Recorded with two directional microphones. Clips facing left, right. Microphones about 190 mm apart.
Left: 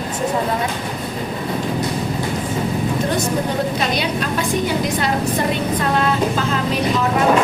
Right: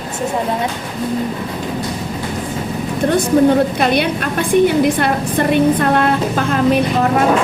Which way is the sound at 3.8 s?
55° right (ahead or behind).